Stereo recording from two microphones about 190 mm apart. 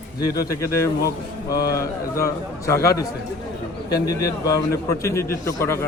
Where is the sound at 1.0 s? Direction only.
55° left (ahead or behind).